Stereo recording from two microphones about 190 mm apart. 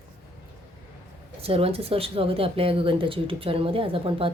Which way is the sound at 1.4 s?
30° right (ahead or behind).